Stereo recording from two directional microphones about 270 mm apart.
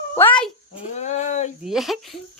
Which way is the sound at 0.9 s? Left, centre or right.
Left.